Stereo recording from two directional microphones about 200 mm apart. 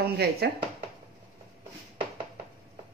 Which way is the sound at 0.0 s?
55° right (ahead or behind).